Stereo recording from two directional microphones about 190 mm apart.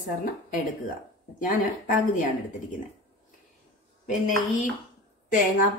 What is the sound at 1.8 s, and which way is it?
Speech, 45° left (ahead or behind).